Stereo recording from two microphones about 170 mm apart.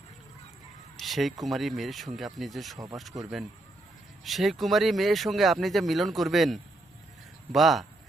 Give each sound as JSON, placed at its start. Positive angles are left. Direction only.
{"t": 0.9, "sound": "speech", "side_deg": 0}
{"t": 2.7, "sound": "speech", "side_deg": -20}
{"t": 4.2, "sound": "speech", "side_deg": 0}